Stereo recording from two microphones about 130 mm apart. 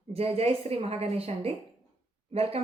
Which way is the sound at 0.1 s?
50° right (ahead or behind).